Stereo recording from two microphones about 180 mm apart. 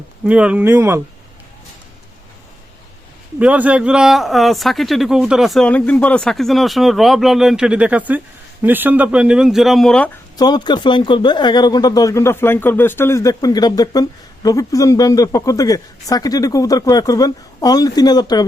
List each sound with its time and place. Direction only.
0.3 s speech: 5° right (ahead or behind)
3.3 s speech: 10° right (ahead or behind)
10.3 s speech: 20° left (ahead or behind)